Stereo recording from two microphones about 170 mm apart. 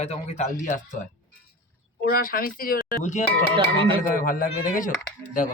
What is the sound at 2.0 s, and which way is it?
Speech, 60° left (ahead or behind).